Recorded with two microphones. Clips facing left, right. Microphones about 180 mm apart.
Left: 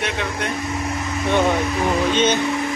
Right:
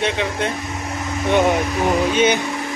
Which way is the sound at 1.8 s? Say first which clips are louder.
Right 2 dB; 15° right (ahead or behind).